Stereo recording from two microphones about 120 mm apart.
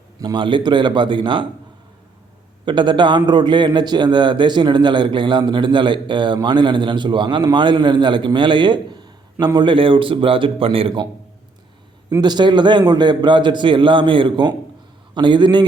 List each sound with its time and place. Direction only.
0.2 s a man's voice: 40° right (ahead or behind)
2.6 s a man's voice: 40° right (ahead or behind)
12.2 s a man's voice: 35° right (ahead or behind)